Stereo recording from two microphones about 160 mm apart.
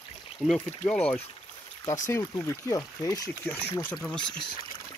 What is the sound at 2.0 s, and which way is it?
Speech, 20° left (ahead or behind).